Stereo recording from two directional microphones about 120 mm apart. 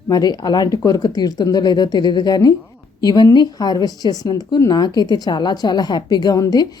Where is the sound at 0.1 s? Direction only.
35° left (ahead or behind).